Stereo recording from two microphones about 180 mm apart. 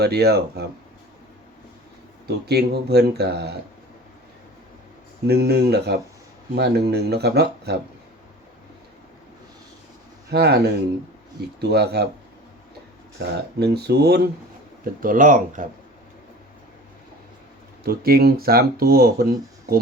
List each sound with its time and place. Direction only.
0.0 s speech: 60° right (ahead or behind)
2.2 s speech: 65° right (ahead or behind)
5.3 s speech: 65° right (ahead or behind)
10.3 s speech: 65° right (ahead or behind)
13.1 s speech: 65° right (ahead or behind)
15.0 s speech: 50° right (ahead or behind)
17.8 s speech: 60° right (ahead or behind)